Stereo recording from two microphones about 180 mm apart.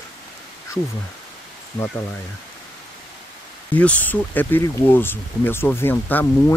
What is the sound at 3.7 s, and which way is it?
Speech, 10° left (ahead or behind).